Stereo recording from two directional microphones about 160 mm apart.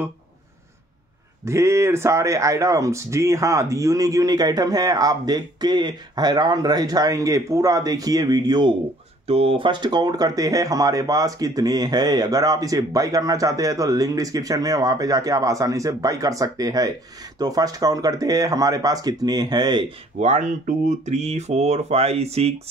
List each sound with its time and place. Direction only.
1.4 s speech: 15° right (ahead or behind)
20.2 s speech: 45° right (ahead or behind)